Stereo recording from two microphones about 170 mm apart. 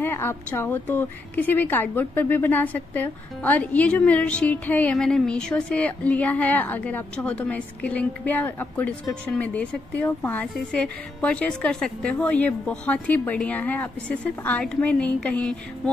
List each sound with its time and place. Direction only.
0.0 s a woman's voice: 15° left (ahead or behind)